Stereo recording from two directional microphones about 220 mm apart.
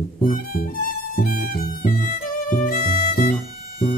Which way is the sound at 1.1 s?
40° left (ahead or behind).